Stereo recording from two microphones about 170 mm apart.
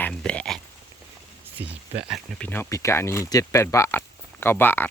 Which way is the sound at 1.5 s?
10° right (ahead or behind).